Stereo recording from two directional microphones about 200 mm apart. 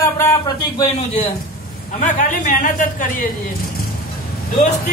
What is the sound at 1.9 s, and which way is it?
Speech, 40° left (ahead or behind).